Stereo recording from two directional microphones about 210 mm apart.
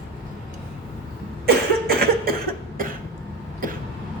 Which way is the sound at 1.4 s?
45° right (ahead or behind).